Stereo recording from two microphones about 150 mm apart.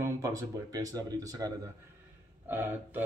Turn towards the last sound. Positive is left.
turn(degrees=-15)  # may be behind; listen again after turning